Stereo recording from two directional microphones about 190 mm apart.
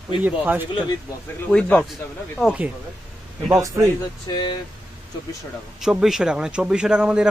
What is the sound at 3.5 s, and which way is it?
Speech, 15° right (ahead or behind).